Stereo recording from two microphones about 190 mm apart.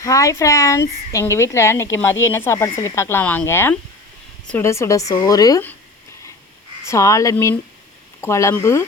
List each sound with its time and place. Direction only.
0.0 s speech: 15° left (ahead or behind)
6.8 s speech: 15° left (ahead or behind)